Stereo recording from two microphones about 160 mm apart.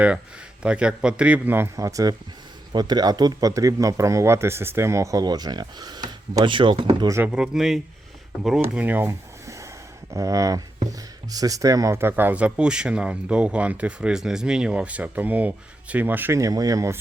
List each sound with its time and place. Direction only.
0.6 s speech: 5° right (ahead or behind); by 7.1 s 30° right (ahead or behind)
7.1 s speech: 10° right (ahead or behind)